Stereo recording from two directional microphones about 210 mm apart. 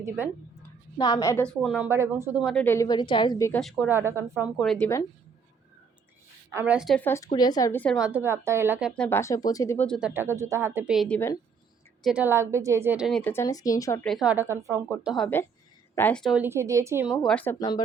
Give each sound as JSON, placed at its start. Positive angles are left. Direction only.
{"t": 0.2, "sound": "speech", "side_deg": -10}
{"t": 0.9, "sound": "a woman's voice", "side_deg": 20}
{"t": 2.6, "sound": "a woman's voice", "side_deg": 15}
{"t": 3.6, "sound": "speech", "side_deg": 0}
{"t": 4.5, "sound": "a woman's voice", "side_deg": 0}
{"t": 6.5, "sound": "a woman's voice", "side_deg": -10}
{"t": 8.9, "sound": "speech", "side_deg": 10}
{"t": 10.2, "sound": "a woman's voice", "side_deg": -10}
{"t": 14.0, "sound": "speech", "side_deg": 0}
{"t": 15.1, "sound": "a woman's voice", "side_deg": 5}
{"t": 17.2, "sound": "speech", "side_deg": 10}